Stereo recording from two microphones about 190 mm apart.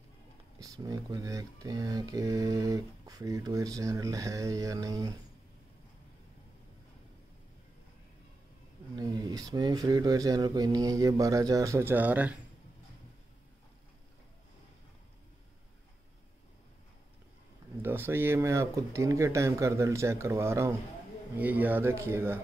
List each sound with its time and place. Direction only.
0.6 s speech: 20° right (ahead or behind)
8.9 s speech: 20° right (ahead or behind)
17.8 s speech: 10° right (ahead or behind)